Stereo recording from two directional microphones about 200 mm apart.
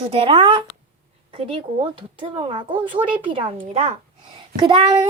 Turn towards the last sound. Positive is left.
turn(degrees=-20)  # may be behind; listen again after turning